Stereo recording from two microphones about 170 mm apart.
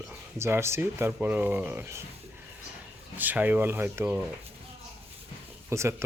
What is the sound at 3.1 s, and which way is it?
Speech, 10° right (ahead or behind).